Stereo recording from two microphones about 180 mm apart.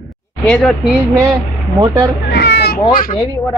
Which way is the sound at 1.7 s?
20° right (ahead or behind).